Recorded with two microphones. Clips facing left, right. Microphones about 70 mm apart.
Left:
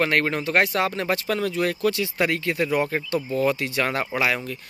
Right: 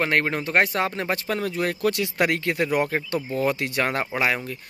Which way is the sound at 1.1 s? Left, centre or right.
Right.